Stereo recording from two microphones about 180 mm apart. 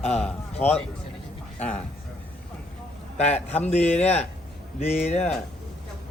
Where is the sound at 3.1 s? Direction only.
35° left (ahead or behind).